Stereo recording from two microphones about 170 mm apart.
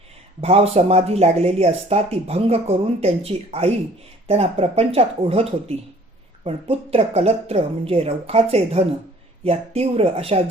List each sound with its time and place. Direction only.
0.4 s speech: 35° right (ahead or behind)